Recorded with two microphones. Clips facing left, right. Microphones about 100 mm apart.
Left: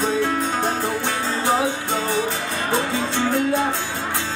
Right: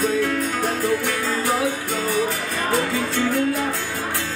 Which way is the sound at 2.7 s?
25° left (ahead or behind).